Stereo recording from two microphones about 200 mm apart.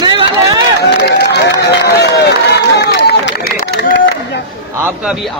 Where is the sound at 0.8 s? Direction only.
60° left (ahead or behind).